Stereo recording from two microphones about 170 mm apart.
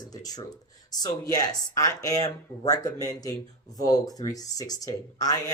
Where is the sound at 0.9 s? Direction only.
20° left (ahead or behind).